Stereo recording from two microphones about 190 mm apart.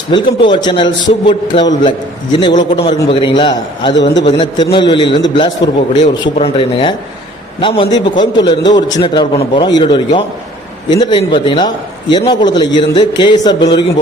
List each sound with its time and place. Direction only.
0.1 s a man's voice: 25° left (ahead or behind)